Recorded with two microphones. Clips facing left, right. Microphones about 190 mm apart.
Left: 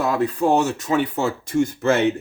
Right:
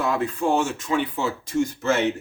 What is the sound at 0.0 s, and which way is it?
Speech, 40° left (ahead or behind).